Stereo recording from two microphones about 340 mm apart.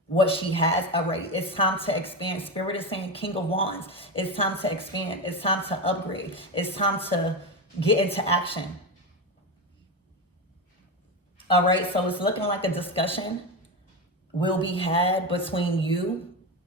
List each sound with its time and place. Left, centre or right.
0.1 s a woman's voice: centre
11.7 s a woman's voice: centre
14.3 s a woman's voice: centre